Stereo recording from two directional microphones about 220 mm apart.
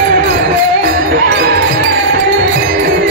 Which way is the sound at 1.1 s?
45° right (ahead or behind).